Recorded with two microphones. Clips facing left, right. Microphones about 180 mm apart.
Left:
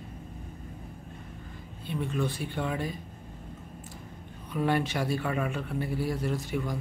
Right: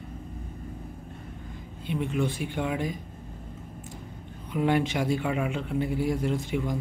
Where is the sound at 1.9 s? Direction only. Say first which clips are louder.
Right 3 dB; 15° right (ahead or behind).